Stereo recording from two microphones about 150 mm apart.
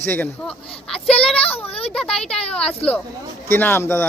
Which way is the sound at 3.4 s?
15° left (ahead or behind).